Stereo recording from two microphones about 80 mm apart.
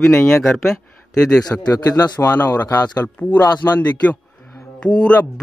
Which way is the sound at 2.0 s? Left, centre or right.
Left.